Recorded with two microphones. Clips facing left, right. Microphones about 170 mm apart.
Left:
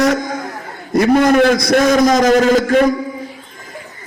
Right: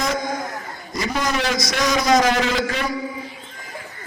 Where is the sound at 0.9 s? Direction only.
55° left (ahead or behind).